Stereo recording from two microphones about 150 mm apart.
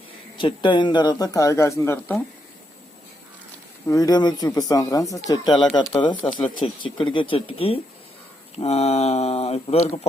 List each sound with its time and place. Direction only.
0.3 s speech: 35° left (ahead or behind)
3.8 s speech: 25° left (ahead or behind); by 10.1 s 45° left (ahead or behind)